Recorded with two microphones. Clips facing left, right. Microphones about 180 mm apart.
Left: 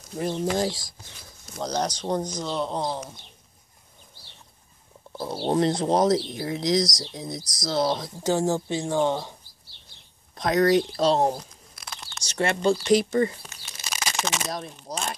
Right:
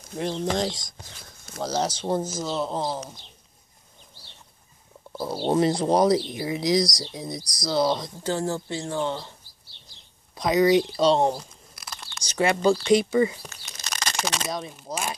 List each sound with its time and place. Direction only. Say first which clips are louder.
0.1 s speech: left 1 dB; 5° left (ahead or behind)
1.6 s speech: right 1 dB; 5° right (ahead or behind)
5.1 s speech: right 1 dB; centre (ahead or behind)
8.5 s speech: left 3 dB; 20° left (ahead or behind)
10.3 s crumpling: right 1 dB; centre (ahead or behind)
12.8 s speech: right 1 dB; centre (ahead or behind)
13.7 s bird: even; 10° left (ahead or behind)
14.4 s speech: right 1 dB; centre (ahead or behind)